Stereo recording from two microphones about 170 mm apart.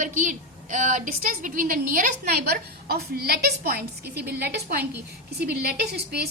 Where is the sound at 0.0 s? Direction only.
50° right (ahead or behind).